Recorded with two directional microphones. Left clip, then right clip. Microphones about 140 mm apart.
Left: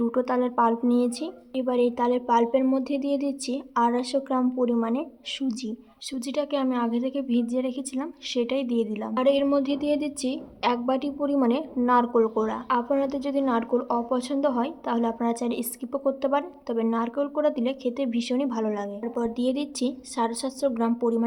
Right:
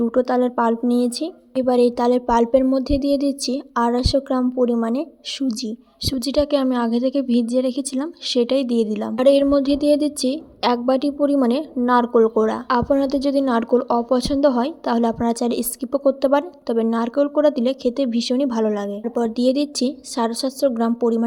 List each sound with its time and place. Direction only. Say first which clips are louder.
0.0 s a woman's voice: right 6 dB; 30° right (ahead or behind)